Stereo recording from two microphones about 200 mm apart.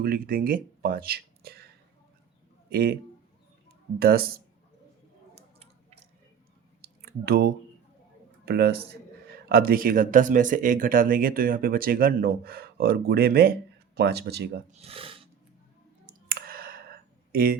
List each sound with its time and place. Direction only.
0.0 s speech: 45° right (ahead or behind)
2.6 s a man's voice: 50° right (ahead or behind)
4.0 s speech: 50° right (ahead or behind)
5.3 s a sound: 30° right (ahead or behind)
7.0 s speech: 50° right (ahead or behind)
14.7 s speech: 30° right (ahead or behind)
16.0 s clicking: 45° right (ahead or behind)